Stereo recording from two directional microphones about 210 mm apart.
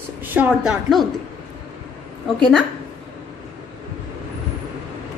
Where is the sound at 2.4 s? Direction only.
Centre (ahead or behind).